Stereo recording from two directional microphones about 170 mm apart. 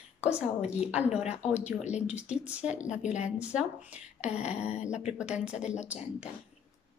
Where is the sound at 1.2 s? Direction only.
40° left (ahead or behind).